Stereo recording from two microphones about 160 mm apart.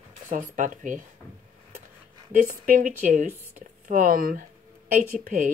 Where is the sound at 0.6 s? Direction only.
55° right (ahead or behind).